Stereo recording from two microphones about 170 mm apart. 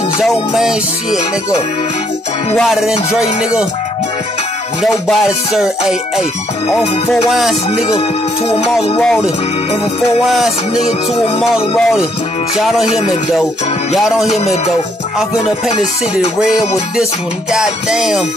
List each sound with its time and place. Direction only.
0.2 s music: centre (ahead or behind)
2.5 s music: centre (ahead or behind)
5.0 s music: centre (ahead or behind)
7.2 s music: centre (ahead or behind)
9.0 s music: 5° left (ahead or behind)
13.9 s music: centre (ahead or behind)
16.3 s music: 5° right (ahead or behind)